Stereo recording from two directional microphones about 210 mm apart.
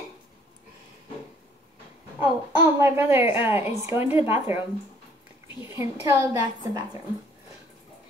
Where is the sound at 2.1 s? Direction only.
10° right (ahead or behind).